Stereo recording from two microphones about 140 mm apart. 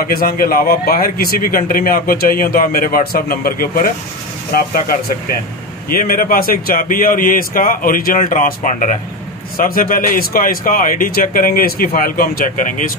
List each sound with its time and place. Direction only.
0.0 s a man's voice: 90° left
5.9 s a man's voice: 90° left; by 8.9 s 65° left (ahead or behind)
9.6 s a man's voice: 80° left